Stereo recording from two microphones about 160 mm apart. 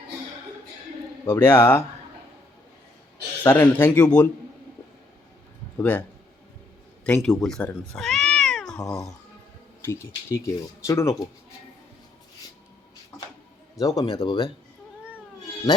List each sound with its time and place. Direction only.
1.2 s speech: 20° left (ahead or behind)
3.4 s speech: 15° left (ahead or behind)
5.7 s speech: 10° left (ahead or behind)
7.9 s cat: centre (ahead or behind)
8.8 s a man's voice: 20° left (ahead or behind)
13.7 s a man's voice: 20° left (ahead or behind)